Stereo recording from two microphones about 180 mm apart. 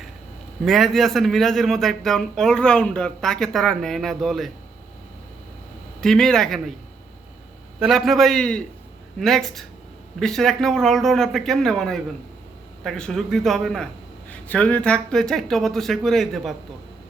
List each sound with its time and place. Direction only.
0.6 s a man's voice: centre (ahead or behind)
6.0 s a man's voice: centre (ahead or behind)
7.8 s a man's voice: centre (ahead or behind)